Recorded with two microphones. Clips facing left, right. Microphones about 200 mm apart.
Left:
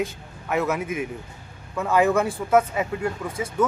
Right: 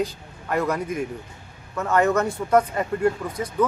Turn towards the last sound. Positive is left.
turn(degrees=5)  # may be behind; listen again after turning